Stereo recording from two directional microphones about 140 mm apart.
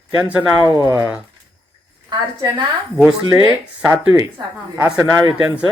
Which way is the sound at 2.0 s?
30° right (ahead or behind).